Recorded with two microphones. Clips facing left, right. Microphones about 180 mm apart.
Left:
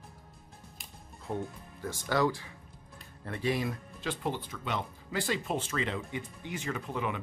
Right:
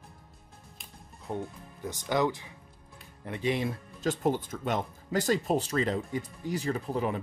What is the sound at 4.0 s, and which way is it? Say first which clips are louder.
Speech: right 8 dB; 45° right (ahead or behind).